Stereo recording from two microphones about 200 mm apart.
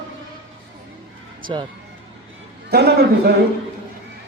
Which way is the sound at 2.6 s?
55° right (ahead or behind).